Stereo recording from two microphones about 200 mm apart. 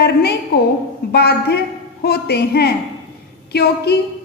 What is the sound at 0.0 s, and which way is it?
A woman's voice, 55° left (ahead or behind).